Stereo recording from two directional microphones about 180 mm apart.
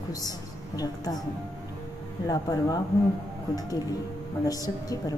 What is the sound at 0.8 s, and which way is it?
Speech, 20° left (ahead or behind).